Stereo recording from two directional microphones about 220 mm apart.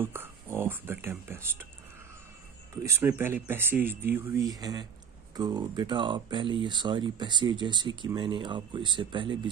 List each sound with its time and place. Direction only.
0.0 s speech: 10° right (ahead or behind)
2.7 s speech: 10° right (ahead or behind)